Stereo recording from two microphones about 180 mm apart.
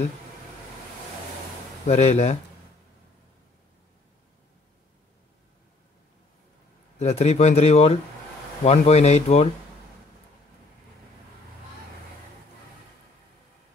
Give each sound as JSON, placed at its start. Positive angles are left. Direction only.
{"t": 1.9, "sound": "speech", "side_deg": 35}
{"t": 7.0, "sound": "speech", "side_deg": 35}